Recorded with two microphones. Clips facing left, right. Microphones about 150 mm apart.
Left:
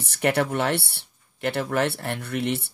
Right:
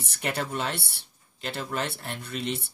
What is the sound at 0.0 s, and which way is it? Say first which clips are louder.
Speech: left 8 dB; 70° left (ahead or behind).